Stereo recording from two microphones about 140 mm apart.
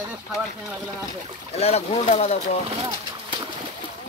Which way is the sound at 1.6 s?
50° left (ahead or behind).